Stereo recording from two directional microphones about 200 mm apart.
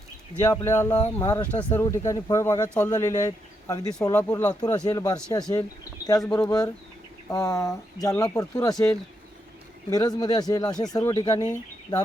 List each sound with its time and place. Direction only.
0.4 s speech: 15° left (ahead or behind)
9.9 s speech: 20° left (ahead or behind)